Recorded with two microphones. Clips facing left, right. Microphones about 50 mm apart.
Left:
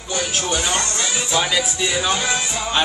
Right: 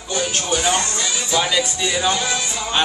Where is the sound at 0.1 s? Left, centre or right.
Centre.